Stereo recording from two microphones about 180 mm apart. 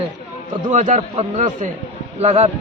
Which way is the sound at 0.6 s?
40° right (ahead or behind).